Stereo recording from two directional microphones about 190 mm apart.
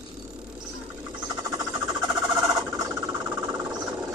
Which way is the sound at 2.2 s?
20° right (ahead or behind).